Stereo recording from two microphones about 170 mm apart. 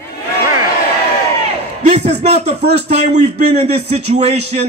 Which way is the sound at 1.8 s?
40° right (ahead or behind).